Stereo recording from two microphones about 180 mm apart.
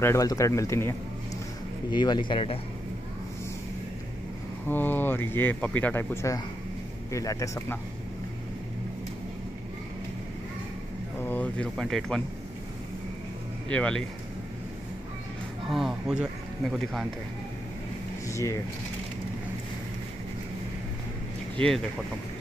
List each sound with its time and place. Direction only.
0.0 s speech: 15° left (ahead or behind)
4.6 s speech: 10° left (ahead or behind)
11.2 s speech: 10° left (ahead or behind)
13.7 s speech: 5° left (ahead or behind)
15.7 s speech: centre (ahead or behind)
18.3 s speech: 15° left (ahead or behind)
21.5 s speech: 5° left (ahead or behind)